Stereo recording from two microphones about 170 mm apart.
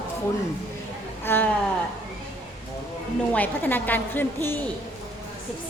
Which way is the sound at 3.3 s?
10° left (ahead or behind).